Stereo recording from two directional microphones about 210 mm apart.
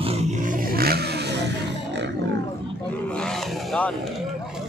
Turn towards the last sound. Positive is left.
turn(degrees=5)  # may be behind; listen again after turning